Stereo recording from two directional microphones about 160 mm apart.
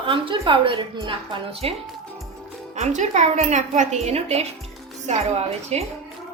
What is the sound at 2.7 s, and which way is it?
A woman's voice, 50° right (ahead or behind).